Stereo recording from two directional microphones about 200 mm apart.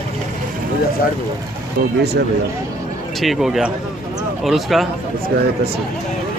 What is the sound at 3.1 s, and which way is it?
Speech, centre (ahead or behind).